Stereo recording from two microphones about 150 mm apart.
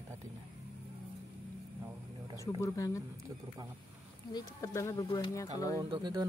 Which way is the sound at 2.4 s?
20° left (ahead or behind).